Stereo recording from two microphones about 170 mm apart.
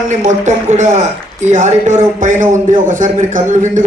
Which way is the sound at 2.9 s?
50° right (ahead or behind).